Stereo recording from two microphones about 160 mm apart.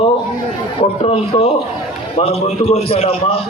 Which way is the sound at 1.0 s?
40° left (ahead or behind).